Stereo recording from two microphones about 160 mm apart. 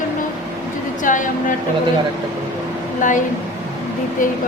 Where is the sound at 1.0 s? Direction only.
55° left (ahead or behind).